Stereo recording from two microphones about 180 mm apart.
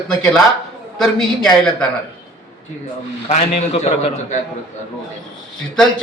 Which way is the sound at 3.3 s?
40° left (ahead or behind).